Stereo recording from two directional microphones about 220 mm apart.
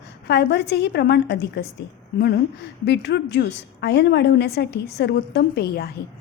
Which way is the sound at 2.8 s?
50° left (ahead or behind).